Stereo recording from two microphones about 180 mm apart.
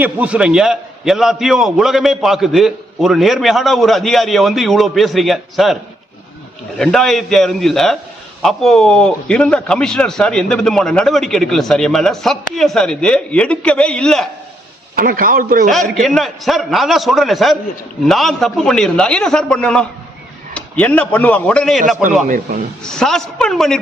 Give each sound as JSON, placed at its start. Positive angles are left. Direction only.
{"t": 0.0, "sound": "a man's voice", "side_deg": -5}
{"t": 6.7, "sound": "a man's voice", "side_deg": 5}
{"t": 14.9, "sound": "a man's voice", "side_deg": -55}
{"t": 16.0, "sound": "a man's voice", "side_deg": 0}
{"t": 22.3, "sound": "a man's voice", "side_deg": -50}
{"t": 22.8, "sound": "a man's voice", "side_deg": 5}